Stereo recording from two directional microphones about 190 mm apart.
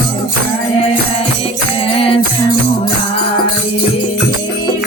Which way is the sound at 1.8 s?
30° left (ahead or behind).